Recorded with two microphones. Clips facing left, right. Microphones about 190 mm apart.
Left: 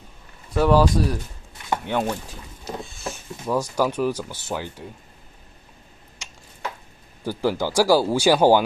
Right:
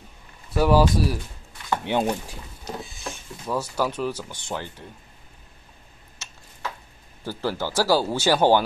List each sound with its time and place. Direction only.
0.6 s speech: 5° right (ahead or behind)
1.9 s speech: 20° right (ahead or behind)
2.6 s a sound: centre (ahead or behind)
3.4 s speech: 10° left (ahead or behind)
6.2 s a sound: 15° left (ahead or behind)
7.2 s speech: 15° left (ahead or behind)